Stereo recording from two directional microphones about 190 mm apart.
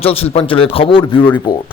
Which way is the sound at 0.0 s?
30° left (ahead or behind).